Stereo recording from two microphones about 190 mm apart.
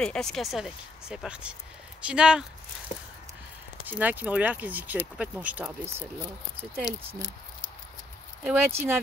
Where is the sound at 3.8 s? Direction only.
10° right (ahead or behind).